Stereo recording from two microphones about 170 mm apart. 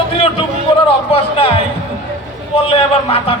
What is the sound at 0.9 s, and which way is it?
Speech, 35° left (ahead or behind).